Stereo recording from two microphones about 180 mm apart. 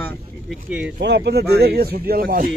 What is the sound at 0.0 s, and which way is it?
Vehicle, 5° left (ahead or behind).